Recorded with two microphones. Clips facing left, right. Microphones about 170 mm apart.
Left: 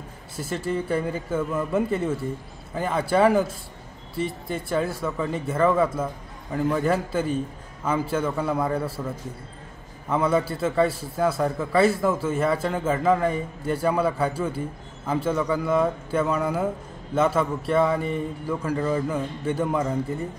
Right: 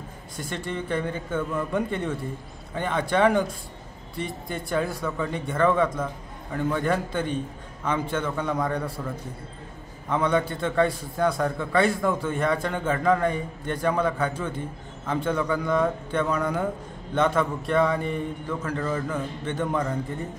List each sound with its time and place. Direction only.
0.4 s a man's voice: 5° left (ahead or behind)